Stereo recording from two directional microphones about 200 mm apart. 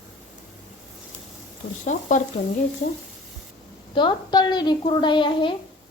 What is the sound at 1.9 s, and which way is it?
Speech, 40° left (ahead or behind).